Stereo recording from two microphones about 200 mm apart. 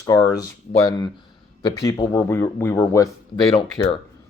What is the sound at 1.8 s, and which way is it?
Speech, 20° left (ahead or behind).